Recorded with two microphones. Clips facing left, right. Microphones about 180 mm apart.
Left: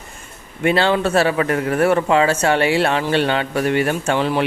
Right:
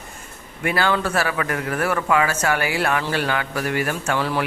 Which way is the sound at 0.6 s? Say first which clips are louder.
Left 5 dB; 25° left (ahead or behind).